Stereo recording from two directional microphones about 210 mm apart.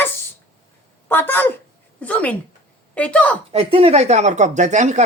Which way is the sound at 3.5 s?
30° right (ahead or behind).